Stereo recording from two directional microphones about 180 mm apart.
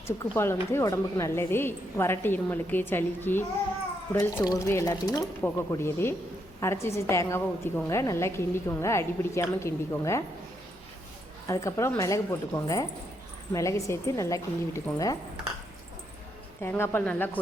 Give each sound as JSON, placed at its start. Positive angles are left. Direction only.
{"t": 0.3, "sound": "a woman's voice", "side_deg": 15}
{"t": 11.4, "sound": "a woman's voice", "side_deg": 15}
{"t": 16.6, "sound": "a woman's voice", "side_deg": 15}